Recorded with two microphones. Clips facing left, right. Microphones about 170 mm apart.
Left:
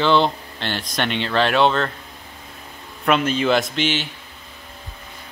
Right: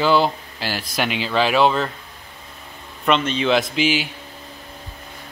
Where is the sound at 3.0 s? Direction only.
5° left (ahead or behind).